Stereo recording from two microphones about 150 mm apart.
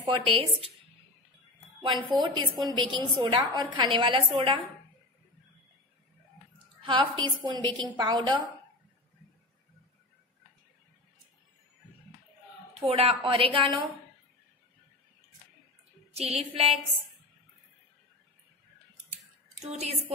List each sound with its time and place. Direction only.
0.0 s a woman's voice: 40° right (ahead or behind)
1.9 s a woman's voice: 30° right (ahead or behind)
6.9 s a woman's voice: 30° right (ahead or behind)
12.7 s a woman's voice: 40° right (ahead or behind)
16.1 s music: 45° right (ahead or behind)
19.6 s music: 45° right (ahead or behind)